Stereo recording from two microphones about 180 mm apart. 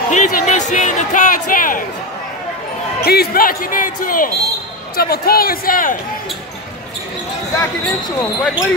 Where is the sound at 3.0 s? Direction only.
60° left (ahead or behind).